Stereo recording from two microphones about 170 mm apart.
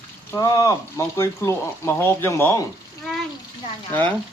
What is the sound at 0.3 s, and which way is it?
Speech, 20° left (ahead or behind).